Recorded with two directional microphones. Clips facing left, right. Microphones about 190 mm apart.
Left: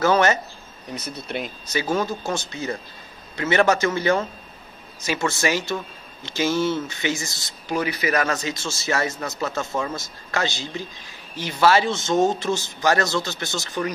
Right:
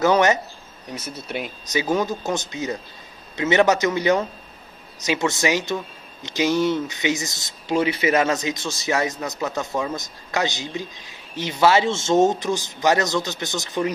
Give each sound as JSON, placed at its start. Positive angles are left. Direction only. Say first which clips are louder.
{"t": 0.0, "sound": "speech", "louder": "right 1 dB", "side_deg": -15}